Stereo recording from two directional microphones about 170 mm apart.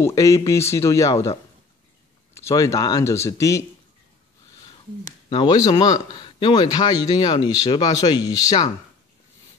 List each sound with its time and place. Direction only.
0.0 s speech: 20° left (ahead or behind)
5.3 s speech: 25° left (ahead or behind)